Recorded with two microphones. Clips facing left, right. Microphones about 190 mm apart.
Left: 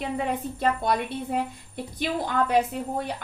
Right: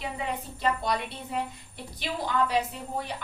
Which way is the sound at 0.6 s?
50° left (ahead or behind).